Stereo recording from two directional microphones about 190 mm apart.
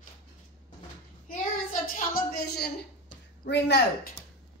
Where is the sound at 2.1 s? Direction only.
55° left (ahead or behind).